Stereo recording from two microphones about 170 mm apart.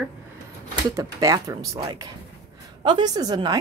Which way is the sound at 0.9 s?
20° right (ahead or behind).